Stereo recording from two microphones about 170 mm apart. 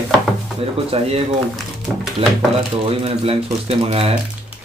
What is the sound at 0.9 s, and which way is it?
Speech, 35° right (ahead or behind).